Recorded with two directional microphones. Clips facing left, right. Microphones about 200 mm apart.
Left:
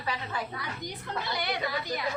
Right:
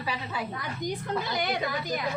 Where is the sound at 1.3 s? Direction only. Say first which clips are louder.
Left 1 dB; 50° right (ahead or behind).